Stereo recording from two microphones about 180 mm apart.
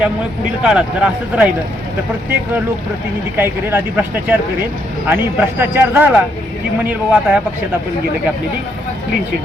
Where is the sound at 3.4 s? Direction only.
10° right (ahead or behind).